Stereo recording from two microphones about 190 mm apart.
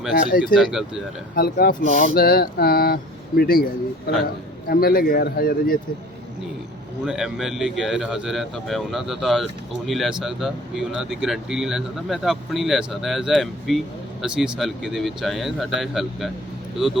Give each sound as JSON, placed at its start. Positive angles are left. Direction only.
{"t": 0.4, "sound": "speech", "side_deg": 0}
{"t": 1.4, "sound": "speech", "side_deg": 50}
{"t": 7.0, "sound": "speech", "side_deg": 0}